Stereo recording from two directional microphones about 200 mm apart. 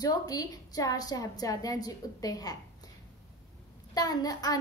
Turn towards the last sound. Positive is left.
turn(degrees=20)  # may be behind; listen again after turning